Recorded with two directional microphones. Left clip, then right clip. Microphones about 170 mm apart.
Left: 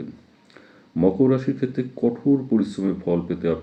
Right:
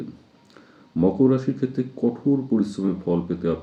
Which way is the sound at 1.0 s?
25° left (ahead or behind).